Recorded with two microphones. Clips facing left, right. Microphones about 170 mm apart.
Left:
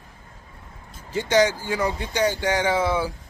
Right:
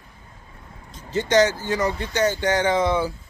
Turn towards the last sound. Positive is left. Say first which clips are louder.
# right 2 dB
turn(degrees=10)  # may be behind; listen again after turning